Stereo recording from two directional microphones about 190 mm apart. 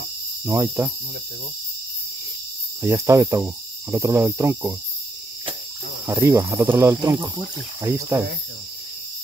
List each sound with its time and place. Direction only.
0.5 s cricket: 15° right (ahead or behind)
2.8 s cricket: 15° right (ahead or behind)
6.0 s cricket: 15° right (ahead or behind)